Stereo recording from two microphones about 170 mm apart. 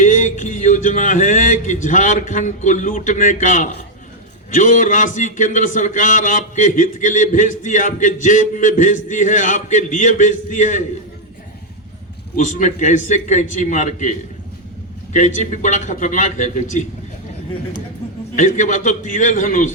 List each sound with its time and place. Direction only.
0.0 s a man's voice: 50° left (ahead or behind)
12.4 s a man's voice: 50° left (ahead or behind)
18.3 s a man's voice: 50° left (ahead or behind)